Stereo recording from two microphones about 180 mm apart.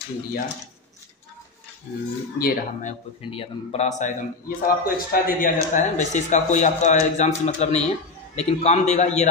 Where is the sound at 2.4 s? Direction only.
50° left (ahead or behind).